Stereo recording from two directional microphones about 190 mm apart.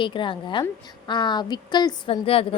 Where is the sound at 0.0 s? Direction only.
25° left (ahead or behind).